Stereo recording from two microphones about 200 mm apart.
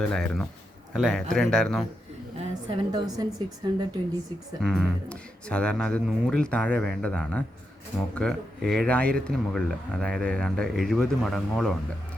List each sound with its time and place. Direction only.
0.0 s speech: 5° left (ahead or behind)
2.6 s a woman's voice: 20° right (ahead or behind)
4.6 s speech: centre (ahead or behind)